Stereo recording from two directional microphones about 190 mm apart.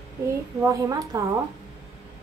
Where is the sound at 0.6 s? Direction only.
15° right (ahead or behind).